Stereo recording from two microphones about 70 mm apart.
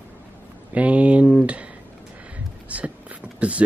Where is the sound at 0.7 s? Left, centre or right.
Centre.